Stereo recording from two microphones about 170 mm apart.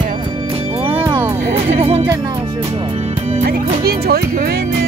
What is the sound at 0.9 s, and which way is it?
Music, 15° right (ahead or behind).